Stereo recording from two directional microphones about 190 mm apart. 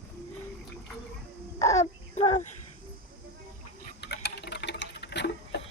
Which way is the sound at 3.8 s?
60° left (ahead or behind).